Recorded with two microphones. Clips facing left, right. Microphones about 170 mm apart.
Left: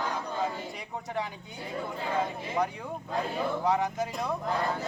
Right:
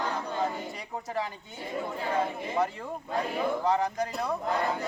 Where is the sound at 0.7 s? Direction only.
Centre (ahead or behind).